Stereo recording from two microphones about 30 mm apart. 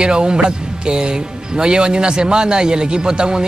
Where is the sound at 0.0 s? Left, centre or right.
Right.